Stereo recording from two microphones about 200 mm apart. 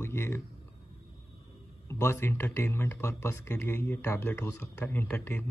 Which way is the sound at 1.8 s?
15° left (ahead or behind).